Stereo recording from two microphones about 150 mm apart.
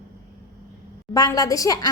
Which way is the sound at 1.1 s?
25° left (ahead or behind).